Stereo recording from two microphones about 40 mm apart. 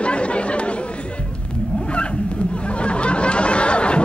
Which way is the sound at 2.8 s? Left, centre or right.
Left.